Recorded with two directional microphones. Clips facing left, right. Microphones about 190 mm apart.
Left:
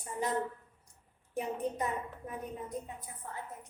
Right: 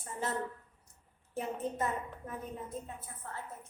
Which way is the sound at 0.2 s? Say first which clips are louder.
Left 2 dB; 15° left (ahead or behind).